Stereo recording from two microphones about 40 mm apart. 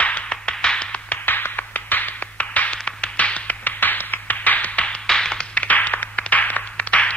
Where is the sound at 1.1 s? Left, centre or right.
Left.